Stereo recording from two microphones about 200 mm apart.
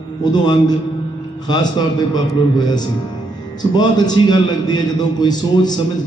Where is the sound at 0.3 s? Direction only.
20° left (ahead or behind).